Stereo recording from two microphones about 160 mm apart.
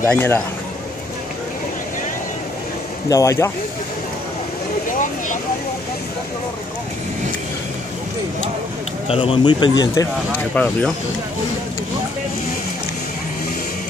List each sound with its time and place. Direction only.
0.0 s speech: 15° left (ahead or behind)
3.1 s speech: 20° left (ahead or behind)
9.0 s speech: 35° left (ahead or behind)
10.5 s speech: 10° left (ahead or behind)